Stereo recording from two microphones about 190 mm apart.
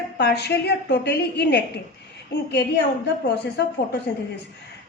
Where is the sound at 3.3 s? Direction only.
60° left (ahead or behind).